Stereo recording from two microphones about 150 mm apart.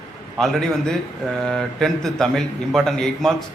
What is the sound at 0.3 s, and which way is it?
A man's voice, 5° left (ahead or behind).